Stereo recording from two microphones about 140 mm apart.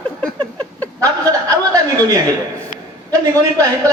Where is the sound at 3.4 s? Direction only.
25° right (ahead or behind).